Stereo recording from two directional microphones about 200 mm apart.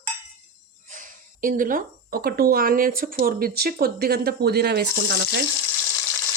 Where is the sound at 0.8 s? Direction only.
40° right (ahead or behind); by 5.4 s 55° right (ahead or behind).